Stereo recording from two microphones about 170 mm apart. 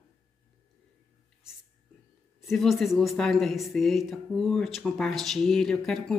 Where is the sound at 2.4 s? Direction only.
Centre (ahead or behind).